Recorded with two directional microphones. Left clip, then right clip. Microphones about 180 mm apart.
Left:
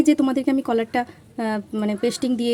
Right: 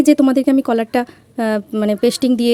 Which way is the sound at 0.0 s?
40° right (ahead or behind).